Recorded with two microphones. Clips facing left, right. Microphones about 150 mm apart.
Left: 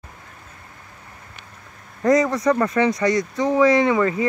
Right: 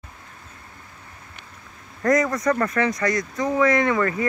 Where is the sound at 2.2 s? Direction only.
10° left (ahead or behind).